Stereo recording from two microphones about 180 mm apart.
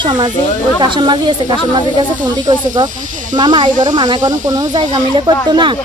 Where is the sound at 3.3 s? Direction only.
25° right (ahead or behind).